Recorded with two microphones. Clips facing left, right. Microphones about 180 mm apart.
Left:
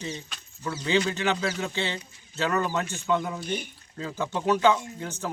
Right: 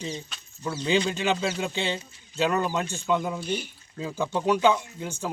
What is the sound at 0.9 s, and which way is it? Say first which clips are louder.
Speech: right 1 dB; 15° right (ahead or behind).